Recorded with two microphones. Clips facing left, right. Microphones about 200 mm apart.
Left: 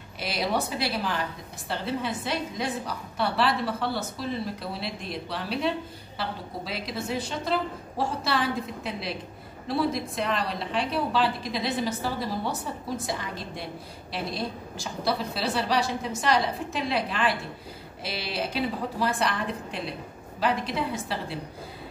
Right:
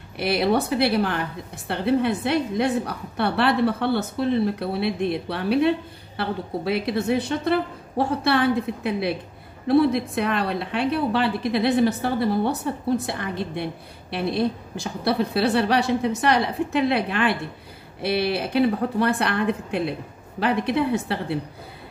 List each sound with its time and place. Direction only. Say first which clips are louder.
0.2 s a woman's voice: right 7 dB; 60° right (ahead or behind)